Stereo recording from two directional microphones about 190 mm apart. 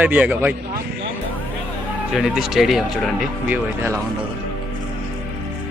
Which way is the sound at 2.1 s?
Centre (ahead or behind).